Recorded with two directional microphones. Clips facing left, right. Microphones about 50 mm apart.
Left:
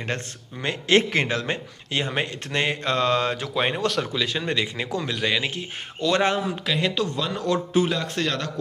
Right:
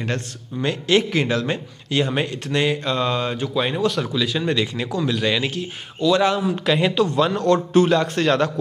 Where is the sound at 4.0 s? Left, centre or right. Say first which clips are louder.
Right 4 dB; left.